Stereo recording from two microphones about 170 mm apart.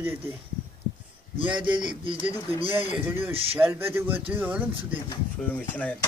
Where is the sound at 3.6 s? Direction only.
10° right (ahead or behind).